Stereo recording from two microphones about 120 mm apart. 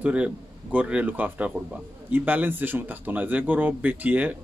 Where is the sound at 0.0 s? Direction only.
10° right (ahead or behind).